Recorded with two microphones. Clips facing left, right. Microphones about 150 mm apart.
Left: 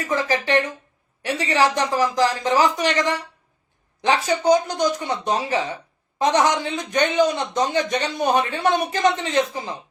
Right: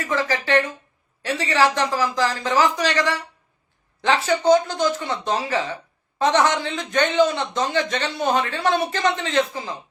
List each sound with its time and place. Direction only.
0.0 s speech: 20° left (ahead or behind)